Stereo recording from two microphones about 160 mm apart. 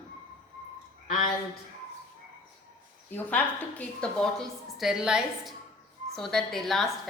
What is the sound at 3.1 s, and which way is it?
A woman's voice, 10° left (ahead or behind).